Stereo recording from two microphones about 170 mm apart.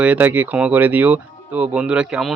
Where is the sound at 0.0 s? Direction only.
10° right (ahead or behind).